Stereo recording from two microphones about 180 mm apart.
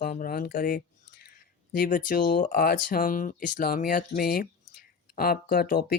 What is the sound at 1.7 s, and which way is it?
Speech, 50° left (ahead or behind).